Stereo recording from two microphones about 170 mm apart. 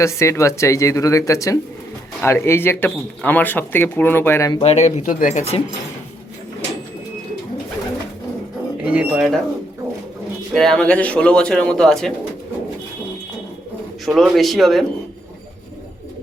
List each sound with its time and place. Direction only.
0.0 s speech: 15° left (ahead or behind)
4.5 s speech: 40° left (ahead or behind)
8.8 s speech: 5° right (ahead or behind)
10.5 s speech: 5° left (ahead or behind)
14.0 s speech: centre (ahead or behind)